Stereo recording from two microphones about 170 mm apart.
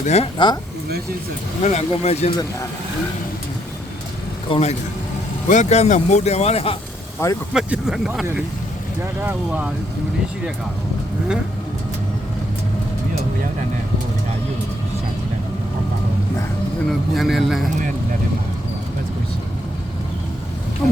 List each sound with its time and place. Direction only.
0.0 s speech: 40° left (ahead or behind)
0.3 s speech: 25° left (ahead or behind)
1.6 s speech: 40° left (ahead or behind)
4.4 s speech: 30° left (ahead or behind)
5.5 s speech: 45° left (ahead or behind)
7.2 s speech: 15° left (ahead or behind)
7.5 s speech: 5° right (ahead or behind)
17.2 s speech: centre (ahead or behind)